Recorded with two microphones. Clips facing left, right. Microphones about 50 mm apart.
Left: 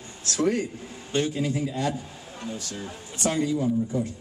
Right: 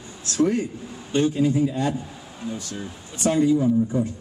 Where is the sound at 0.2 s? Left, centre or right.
Left.